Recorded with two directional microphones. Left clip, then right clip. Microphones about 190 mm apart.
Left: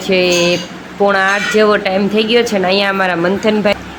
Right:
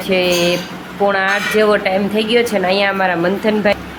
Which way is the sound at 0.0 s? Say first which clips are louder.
Left 2 dB; 15° left (ahead or behind).